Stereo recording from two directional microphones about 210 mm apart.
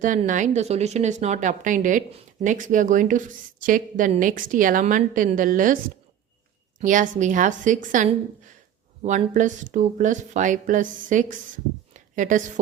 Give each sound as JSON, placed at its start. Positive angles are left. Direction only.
{"t": 0.0, "sound": "speech", "side_deg": -35}
{"t": 6.8, "sound": "a woman's voice", "side_deg": -40}